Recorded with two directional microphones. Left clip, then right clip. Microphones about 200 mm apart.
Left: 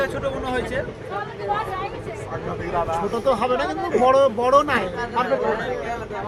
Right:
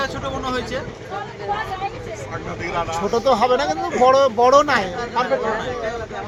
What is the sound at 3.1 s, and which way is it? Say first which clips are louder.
A man's voice: right 6 dB; 30° right (ahead or behind).